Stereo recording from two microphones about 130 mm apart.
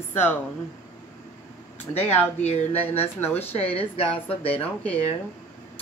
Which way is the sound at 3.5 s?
50° left (ahead or behind).